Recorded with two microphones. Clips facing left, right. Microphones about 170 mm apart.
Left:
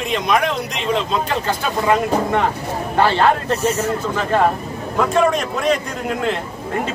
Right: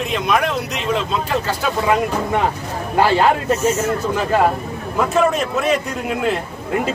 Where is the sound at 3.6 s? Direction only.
35° left (ahead or behind).